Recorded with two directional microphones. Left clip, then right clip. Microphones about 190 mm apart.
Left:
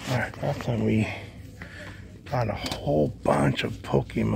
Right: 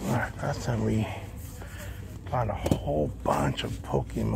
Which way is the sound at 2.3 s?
45° left (ahead or behind).